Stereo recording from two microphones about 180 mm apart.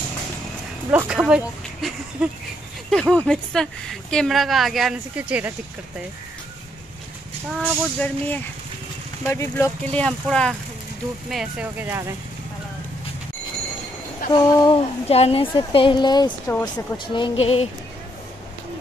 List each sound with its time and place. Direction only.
0.9 s speech: 5° right (ahead or behind)
7.5 s speech: 10° left (ahead or behind); by 12.1 s 10° right (ahead or behind)
14.3 s a woman's voice: 25° left (ahead or behind)
16.3 s speech: 10° left (ahead or behind)
16.7 s a woman's voice: 25° left (ahead or behind)